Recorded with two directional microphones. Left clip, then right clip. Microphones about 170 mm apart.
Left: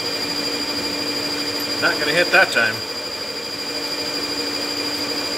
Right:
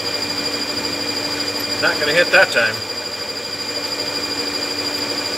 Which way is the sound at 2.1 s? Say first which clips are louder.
Right 2 dB; 10° right (ahead or behind).